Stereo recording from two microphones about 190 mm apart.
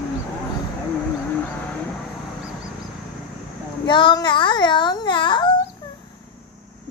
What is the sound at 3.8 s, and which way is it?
A child's voice, 25° left (ahead or behind).